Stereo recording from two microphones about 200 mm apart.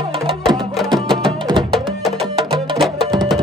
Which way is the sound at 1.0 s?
25° right (ahead or behind).